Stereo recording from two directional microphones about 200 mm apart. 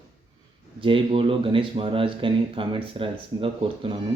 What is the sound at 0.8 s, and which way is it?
Speech, 25° right (ahead or behind).